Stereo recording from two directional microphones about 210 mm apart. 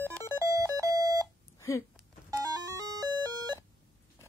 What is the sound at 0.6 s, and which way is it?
Music, 15° right (ahead or behind).